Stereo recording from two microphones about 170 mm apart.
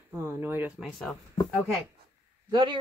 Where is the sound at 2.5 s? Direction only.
25° right (ahead or behind).